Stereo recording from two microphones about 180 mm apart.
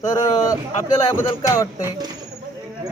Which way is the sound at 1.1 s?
15° left (ahead or behind).